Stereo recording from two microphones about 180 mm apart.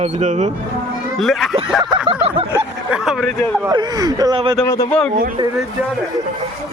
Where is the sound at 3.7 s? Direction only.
20° right (ahead or behind).